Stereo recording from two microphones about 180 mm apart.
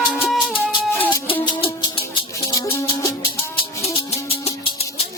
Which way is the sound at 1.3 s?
30° left (ahead or behind).